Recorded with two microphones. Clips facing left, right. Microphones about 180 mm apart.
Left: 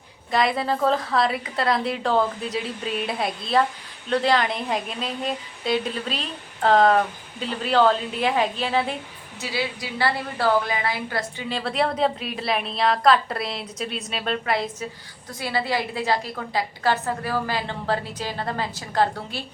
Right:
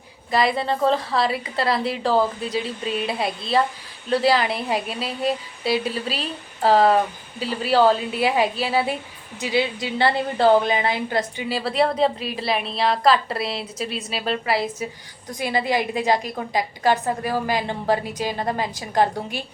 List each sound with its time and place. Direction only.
0.3 s a woman's voice: centre (ahead or behind)
9.4 s a woman's voice: 20° right (ahead or behind)
11.4 s a woman's voice: 5° right (ahead or behind)
15.3 s a woman's voice: 15° right (ahead or behind)